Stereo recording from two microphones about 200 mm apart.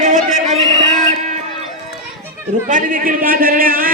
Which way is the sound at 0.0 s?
35° right (ahead or behind).